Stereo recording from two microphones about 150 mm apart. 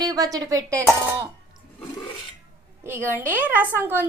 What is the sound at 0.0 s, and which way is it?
Speech, 25° right (ahead or behind).